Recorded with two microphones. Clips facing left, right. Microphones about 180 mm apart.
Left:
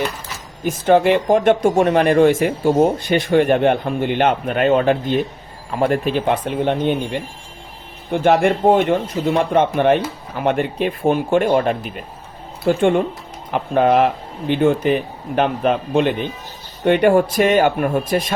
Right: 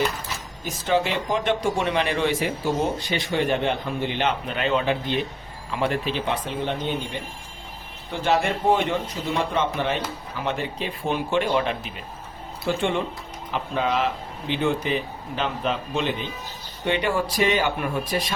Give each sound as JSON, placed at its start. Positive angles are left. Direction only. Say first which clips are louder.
{"t": 0.6, "sound": "speech", "louder": "left 9 dB", "side_deg": 55}